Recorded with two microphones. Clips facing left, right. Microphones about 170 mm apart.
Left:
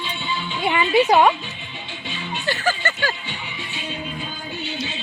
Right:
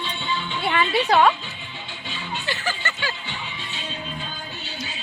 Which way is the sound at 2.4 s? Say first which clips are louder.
Left 7 dB; 45° left (ahead or behind).